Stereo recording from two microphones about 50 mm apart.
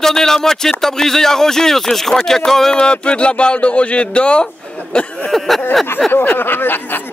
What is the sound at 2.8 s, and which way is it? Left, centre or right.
Speech, left.